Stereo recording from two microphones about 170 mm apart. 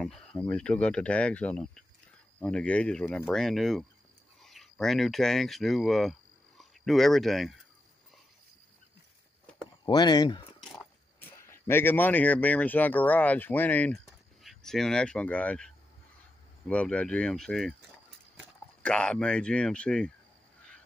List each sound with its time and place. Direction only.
0.0 s speech: 5° left (ahead or behind)
9.8 s speech: 25° left (ahead or behind)
10.6 s a sound: centre (ahead or behind)
11.1 s speech: 15° left (ahead or behind)
18.8 s speech: 5° left (ahead or behind)